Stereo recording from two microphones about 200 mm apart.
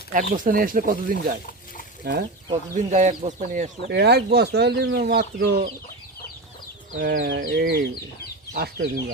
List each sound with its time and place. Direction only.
0.1 s speech: 40° right (ahead or behind)
2.5 s speech: 35° right (ahead or behind)
3.8 s speech: 55° right (ahead or behind)
6.9 s speech: 45° right (ahead or behind)
7.3 s speech: 65° right (ahead or behind)